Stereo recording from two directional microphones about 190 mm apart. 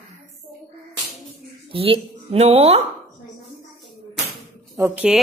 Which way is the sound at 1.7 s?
30° right (ahead or behind).